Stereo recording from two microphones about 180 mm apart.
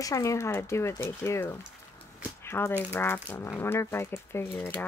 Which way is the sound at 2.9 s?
15° left (ahead or behind).